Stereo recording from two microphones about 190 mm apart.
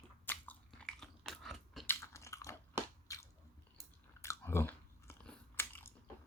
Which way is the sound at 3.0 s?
15° left (ahead or behind).